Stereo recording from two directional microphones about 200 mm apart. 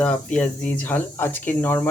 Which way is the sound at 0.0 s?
5° left (ahead or behind).